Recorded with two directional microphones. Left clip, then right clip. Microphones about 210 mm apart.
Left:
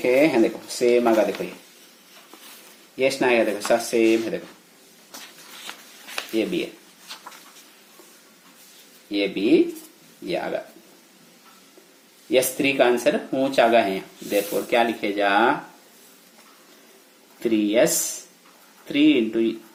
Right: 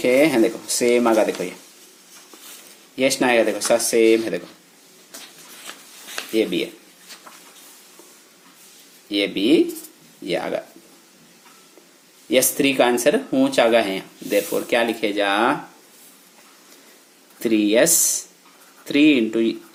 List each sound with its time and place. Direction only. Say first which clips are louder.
0.0 s speech: right 2 dB; 25° right (ahead or behind)
2.9 s speech: right 2 dB; 30° right (ahead or behind)
6.3 s speech: right 4 dB; 30° right (ahead or behind)
9.0 s speech: right 2 dB; 30° right (ahead or behind)
12.3 s speech: right 2 dB; 30° right (ahead or behind)
17.4 s speech: right 2 dB; 30° right (ahead or behind)